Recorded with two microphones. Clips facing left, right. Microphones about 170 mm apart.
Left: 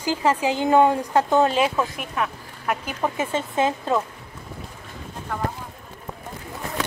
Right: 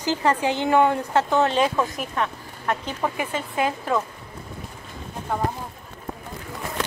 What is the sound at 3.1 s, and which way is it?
Speech, 25° left (ahead or behind).